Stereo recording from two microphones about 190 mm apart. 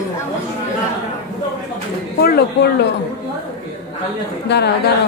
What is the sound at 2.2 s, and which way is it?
Speech, 55° left (ahead or behind).